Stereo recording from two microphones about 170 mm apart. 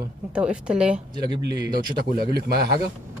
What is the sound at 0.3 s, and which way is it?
Speech, 5° right (ahead or behind).